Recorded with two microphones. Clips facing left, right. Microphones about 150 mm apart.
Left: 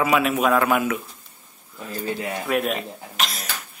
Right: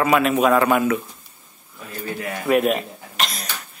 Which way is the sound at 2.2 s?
25° left (ahead or behind).